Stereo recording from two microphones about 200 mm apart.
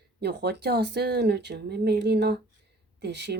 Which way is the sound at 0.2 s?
55° right (ahead or behind).